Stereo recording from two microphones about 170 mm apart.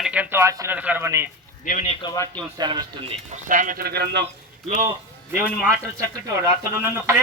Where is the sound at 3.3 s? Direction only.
50° right (ahead or behind); by 4.3 s 70° right (ahead or behind).